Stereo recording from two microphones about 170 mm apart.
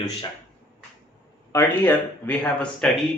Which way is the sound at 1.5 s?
10° left (ahead or behind).